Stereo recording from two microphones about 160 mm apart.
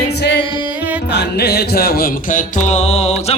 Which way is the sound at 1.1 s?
90° left.